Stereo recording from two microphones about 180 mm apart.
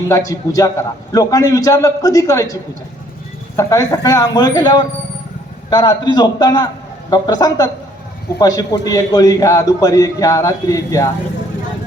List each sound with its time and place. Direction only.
0.1 s a man's voice: 20° left (ahead or behind)